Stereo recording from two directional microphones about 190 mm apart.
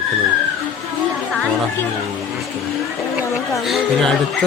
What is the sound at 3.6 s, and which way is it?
Speech, centre (ahead or behind).